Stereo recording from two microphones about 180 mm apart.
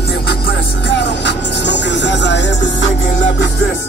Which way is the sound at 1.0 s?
75° left (ahead or behind).